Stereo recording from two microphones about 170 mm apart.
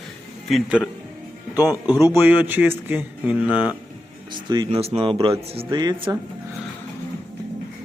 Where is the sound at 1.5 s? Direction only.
10° right (ahead or behind).